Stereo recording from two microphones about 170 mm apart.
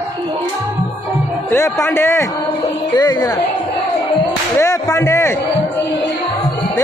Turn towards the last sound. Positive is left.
turn(degrees=20)  # may be behind; listen again after turning